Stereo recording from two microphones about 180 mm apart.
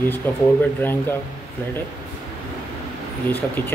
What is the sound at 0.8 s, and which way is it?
Speech, 10° left (ahead or behind).